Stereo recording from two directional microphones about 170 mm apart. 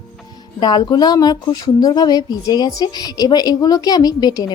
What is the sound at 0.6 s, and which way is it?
Speech, 25° left (ahead or behind).